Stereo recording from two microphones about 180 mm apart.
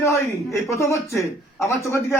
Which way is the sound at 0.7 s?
15° left (ahead or behind).